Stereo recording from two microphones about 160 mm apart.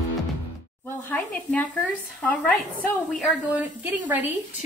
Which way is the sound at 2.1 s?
10° left (ahead or behind).